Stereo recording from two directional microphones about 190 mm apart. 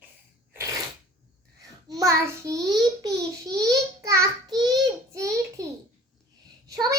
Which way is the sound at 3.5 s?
20° right (ahead or behind).